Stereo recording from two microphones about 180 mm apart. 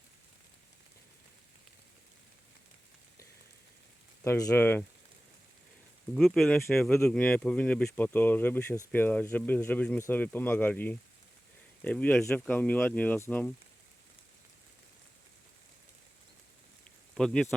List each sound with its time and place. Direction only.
4.2 s speech: 15° left (ahead or behind)
6.1 s speech: centre (ahead or behind)
17.2 s speech: 5° left (ahead or behind)